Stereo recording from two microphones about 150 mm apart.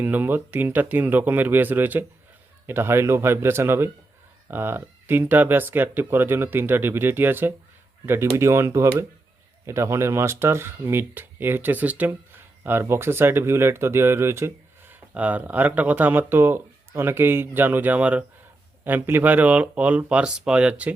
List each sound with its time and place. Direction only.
0.0 s speech: 15° right (ahead or behind)